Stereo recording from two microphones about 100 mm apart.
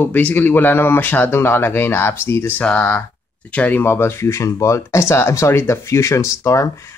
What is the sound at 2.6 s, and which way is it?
Speech, 15° left (ahead or behind).